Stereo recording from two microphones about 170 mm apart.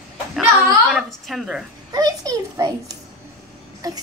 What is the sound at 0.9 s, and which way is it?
Speech, centre (ahead or behind).